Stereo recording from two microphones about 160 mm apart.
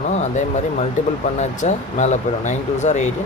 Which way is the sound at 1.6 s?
45° left (ahead or behind).